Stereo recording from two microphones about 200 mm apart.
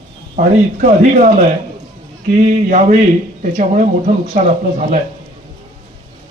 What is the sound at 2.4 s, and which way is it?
Speech, 35° right (ahead or behind).